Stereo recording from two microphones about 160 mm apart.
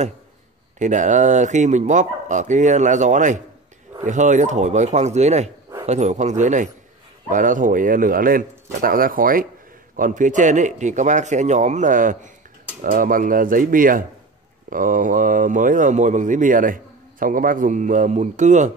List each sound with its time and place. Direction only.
0.7 s a man's voice: 50° right (ahead or behind)